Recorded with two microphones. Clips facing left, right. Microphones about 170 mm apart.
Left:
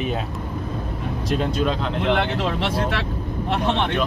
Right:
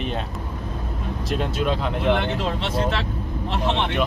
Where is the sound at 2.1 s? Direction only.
65° left (ahead or behind).